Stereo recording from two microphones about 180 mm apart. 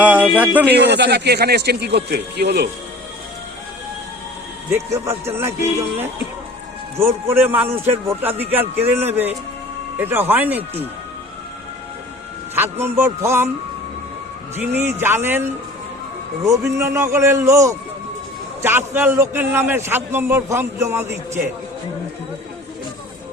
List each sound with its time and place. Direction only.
0.0 s a man's voice: 10° right (ahead or behind)
0.7 s speech: 70° right (ahead or behind)
4.9 s a man's voice: 15° right (ahead or behind)
6.9 s a man's voice: 10° right (ahead or behind)
12.5 s a man's voice: 10° right (ahead or behind)
14.5 s a man's voice: 10° right (ahead or behind)